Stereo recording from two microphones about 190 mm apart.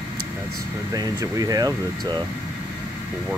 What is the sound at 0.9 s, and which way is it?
Speech, 20° right (ahead or behind).